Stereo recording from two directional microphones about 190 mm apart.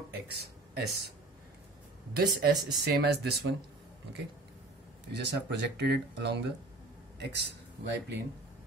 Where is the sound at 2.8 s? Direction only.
60° right (ahead or behind).